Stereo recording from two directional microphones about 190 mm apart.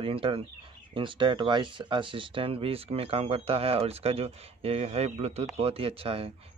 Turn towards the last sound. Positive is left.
turn(degrees=-30)  # may be behind; listen again after turning